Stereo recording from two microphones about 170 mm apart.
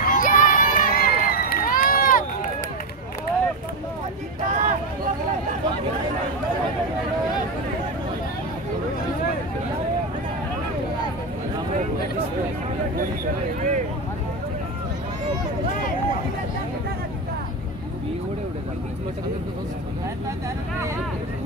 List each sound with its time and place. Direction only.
0.0 s crowd: 55° left (ahead or behind)
4.5 s a sound: 45° right (ahead or behind)
13.6 s vehicle: 45° right (ahead or behind)